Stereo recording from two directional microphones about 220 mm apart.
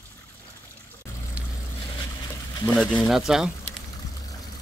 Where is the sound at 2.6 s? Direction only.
5° left (ahead or behind).